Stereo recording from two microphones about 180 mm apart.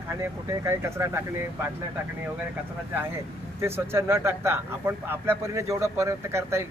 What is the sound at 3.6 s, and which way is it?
Speech, 15° right (ahead or behind).